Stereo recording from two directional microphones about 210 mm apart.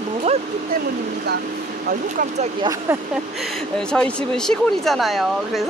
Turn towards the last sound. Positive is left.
turn(degrees=0)  # may be behind; listen again after turning